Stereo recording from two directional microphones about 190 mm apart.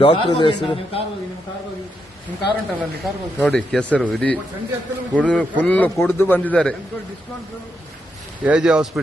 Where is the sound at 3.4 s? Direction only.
5° left (ahead or behind).